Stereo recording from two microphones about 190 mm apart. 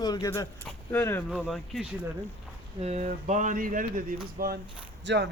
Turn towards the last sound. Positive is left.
turn(degrees=-65)  # may be behind; listen again after turning